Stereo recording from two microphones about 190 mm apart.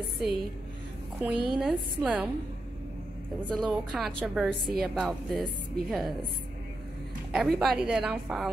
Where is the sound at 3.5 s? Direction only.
Centre (ahead or behind).